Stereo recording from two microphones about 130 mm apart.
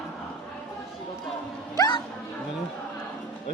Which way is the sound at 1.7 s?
30° left (ahead or behind).